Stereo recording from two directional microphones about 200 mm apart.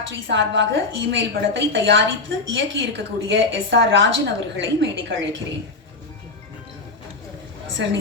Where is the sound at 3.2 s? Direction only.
65° right (ahead or behind).